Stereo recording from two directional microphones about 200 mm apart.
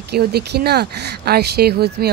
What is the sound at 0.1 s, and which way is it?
A woman's voice, 55° right (ahead or behind).